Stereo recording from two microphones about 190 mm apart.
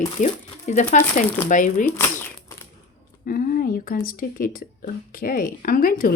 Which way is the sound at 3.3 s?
50° left (ahead or behind).